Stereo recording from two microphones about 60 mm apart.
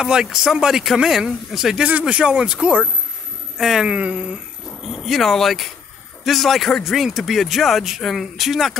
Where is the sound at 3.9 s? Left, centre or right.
Right.